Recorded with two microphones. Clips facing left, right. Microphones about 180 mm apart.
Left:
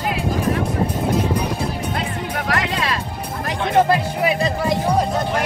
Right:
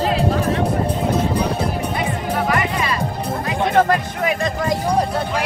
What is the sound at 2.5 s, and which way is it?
Music, 80° left.